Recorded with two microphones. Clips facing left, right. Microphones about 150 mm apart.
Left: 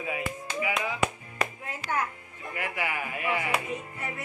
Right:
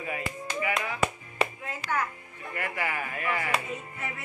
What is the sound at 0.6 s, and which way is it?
Music, 10° left (ahead or behind).